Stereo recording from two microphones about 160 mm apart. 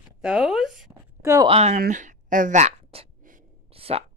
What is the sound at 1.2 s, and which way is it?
Speech, 20° right (ahead or behind).